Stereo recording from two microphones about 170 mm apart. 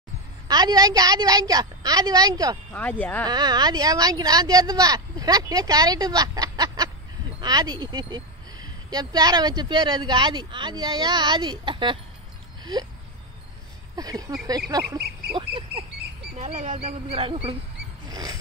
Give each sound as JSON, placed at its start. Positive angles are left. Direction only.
{"t": 0.5, "sound": "speech", "side_deg": -25}
{"t": 2.7, "sound": "speech", "side_deg": 10}
{"t": 3.3, "sound": "speech", "side_deg": -25}
{"t": 13.9, "sound": "speech", "side_deg": -20}
{"t": 15.0, "sound": "duck", "side_deg": -70}
{"t": 16.3, "sound": "speech", "side_deg": -45}
{"t": 18.1, "sound": "a sound", "side_deg": -20}